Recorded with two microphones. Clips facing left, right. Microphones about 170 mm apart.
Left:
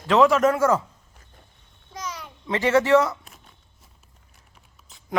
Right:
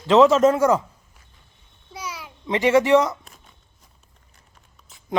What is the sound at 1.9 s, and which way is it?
Babbling, 10° right (ahead or behind).